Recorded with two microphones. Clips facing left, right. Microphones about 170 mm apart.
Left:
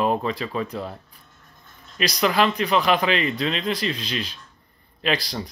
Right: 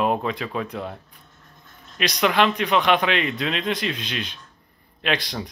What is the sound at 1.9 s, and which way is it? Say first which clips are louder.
Speech: even; centre (ahead or behind).